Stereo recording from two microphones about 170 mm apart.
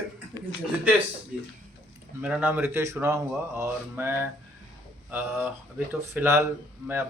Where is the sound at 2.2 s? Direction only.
10° right (ahead or behind).